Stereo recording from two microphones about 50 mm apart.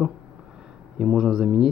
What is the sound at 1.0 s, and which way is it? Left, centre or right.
Speech, centre.